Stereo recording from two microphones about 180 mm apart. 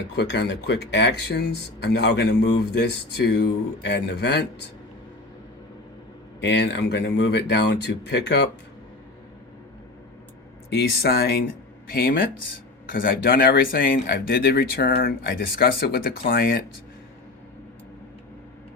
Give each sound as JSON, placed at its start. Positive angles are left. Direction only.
{"t": 0.2, "sound": "speech", "side_deg": 70}
{"t": 6.4, "sound": "speech", "side_deg": 80}
{"t": 10.7, "sound": "speech", "side_deg": 60}